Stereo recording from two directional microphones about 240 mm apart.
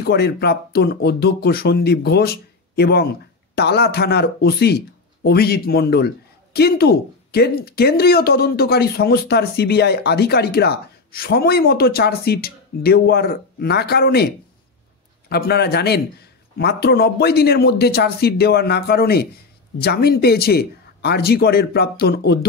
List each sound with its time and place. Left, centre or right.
0.0 s speech: left